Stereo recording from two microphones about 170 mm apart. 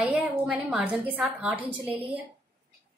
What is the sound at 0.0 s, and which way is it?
A woman's voice, 5° right (ahead or behind).